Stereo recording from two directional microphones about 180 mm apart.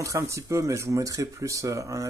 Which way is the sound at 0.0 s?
15° right (ahead or behind).